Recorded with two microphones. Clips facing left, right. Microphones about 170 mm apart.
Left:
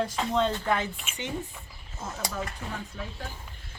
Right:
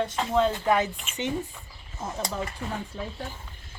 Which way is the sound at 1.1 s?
Centre (ahead or behind).